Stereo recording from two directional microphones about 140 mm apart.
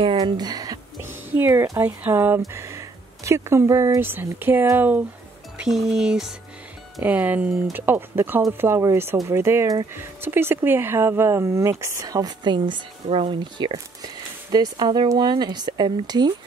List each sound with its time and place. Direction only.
0.0 s a sound: 35° right (ahead or behind)
1.3 s speech: 15° right (ahead or behind)
5.6 s speech: centre (ahead or behind); by 16.3 s 30° right (ahead or behind)